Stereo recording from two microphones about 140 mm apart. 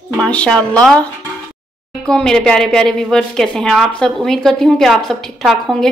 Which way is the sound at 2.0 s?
5° left (ahead or behind).